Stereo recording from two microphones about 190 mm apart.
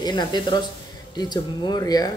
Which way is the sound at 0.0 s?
20° left (ahead or behind).